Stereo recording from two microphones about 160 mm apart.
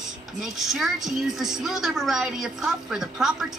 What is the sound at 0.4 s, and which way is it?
A woman's voice, centre (ahead or behind).